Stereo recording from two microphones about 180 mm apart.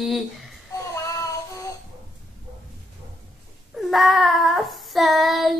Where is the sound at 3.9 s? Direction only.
Centre (ahead or behind).